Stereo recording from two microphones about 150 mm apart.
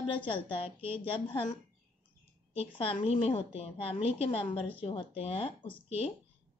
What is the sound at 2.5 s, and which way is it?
Speech, 40° left (ahead or behind).